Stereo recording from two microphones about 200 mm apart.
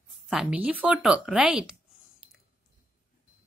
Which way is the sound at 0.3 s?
5° right (ahead or behind).